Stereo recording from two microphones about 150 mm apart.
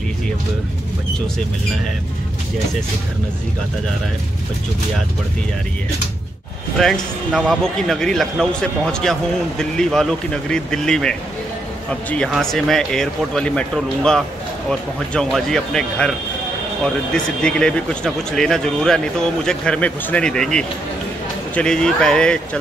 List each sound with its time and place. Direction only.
6.8 s a man's voice: centre (ahead or behind)